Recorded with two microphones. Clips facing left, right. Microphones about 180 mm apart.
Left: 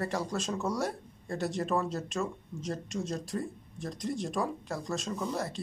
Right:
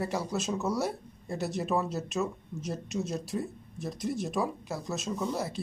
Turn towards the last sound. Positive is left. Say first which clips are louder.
# right 2 dB
turn(degrees=-5)  # may be behind; listen again after turning